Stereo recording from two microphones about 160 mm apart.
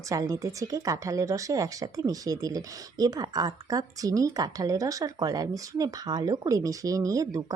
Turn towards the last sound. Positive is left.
turn(degrees=-20)  # may be behind; listen again after turning